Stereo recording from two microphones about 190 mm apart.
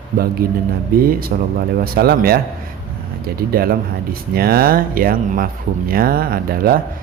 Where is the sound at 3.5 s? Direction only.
50° right (ahead or behind).